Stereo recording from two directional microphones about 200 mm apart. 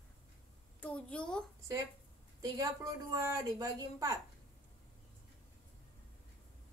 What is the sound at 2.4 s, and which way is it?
A woman's voice, 15° right (ahead or behind).